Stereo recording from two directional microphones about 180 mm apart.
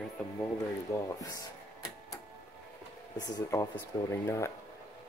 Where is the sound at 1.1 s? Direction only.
20° left (ahead or behind).